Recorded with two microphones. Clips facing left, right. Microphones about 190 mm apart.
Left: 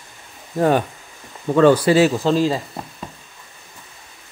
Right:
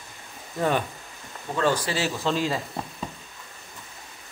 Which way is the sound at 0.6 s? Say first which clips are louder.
Left 7 dB; 45° left (ahead or behind).